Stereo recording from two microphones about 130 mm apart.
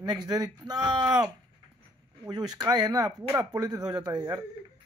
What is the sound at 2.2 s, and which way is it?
Speech, 30° right (ahead or behind).